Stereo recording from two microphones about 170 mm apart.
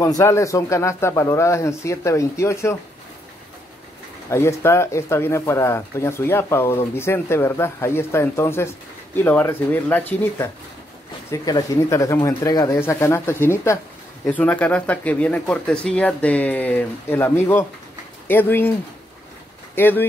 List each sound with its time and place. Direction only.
0.2 s speech: 15° left (ahead or behind)
4.3 s speech: 15° left (ahead or behind)